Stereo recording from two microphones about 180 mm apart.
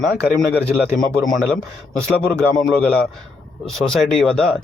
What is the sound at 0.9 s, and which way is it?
Speech, centre (ahead or behind).